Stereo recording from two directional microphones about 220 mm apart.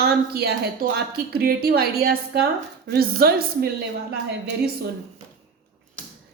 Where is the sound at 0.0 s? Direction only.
45° right (ahead or behind).